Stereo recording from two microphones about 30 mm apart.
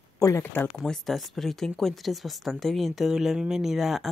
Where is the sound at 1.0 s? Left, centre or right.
Centre.